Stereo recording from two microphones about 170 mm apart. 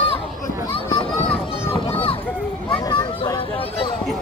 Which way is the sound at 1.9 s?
35° left (ahead or behind).